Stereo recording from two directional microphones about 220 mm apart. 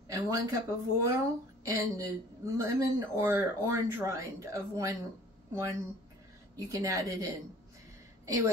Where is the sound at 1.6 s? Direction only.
15° right (ahead or behind).